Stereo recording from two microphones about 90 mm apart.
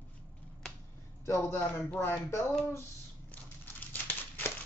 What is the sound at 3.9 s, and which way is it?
Crumpling, 20° left (ahead or behind).